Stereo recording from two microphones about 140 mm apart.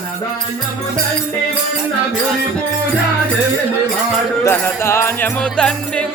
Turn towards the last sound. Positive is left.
turn(degrees=5)  # may be behind; listen again after turning